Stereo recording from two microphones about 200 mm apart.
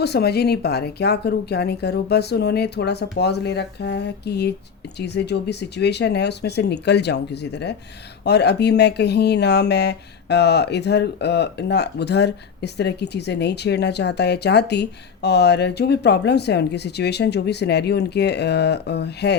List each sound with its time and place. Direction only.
0.0 s speech: 55° left (ahead or behind)